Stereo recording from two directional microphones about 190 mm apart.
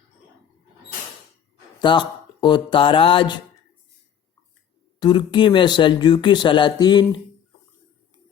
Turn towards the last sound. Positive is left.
turn(degrees=20)  # may be behind; listen again after turning